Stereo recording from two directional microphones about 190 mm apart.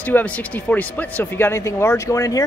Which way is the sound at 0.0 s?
10° left (ahead or behind).